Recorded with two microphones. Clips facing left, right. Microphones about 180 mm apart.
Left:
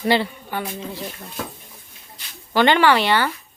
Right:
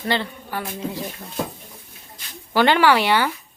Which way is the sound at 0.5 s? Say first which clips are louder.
Left 2 dB; centre (ahead or behind).